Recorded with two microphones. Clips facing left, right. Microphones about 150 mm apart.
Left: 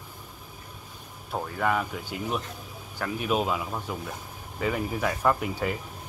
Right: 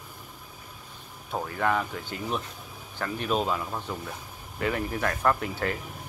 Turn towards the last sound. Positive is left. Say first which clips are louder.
# left 1 dB
turn(degrees=5)  # may be behind; listen again after turning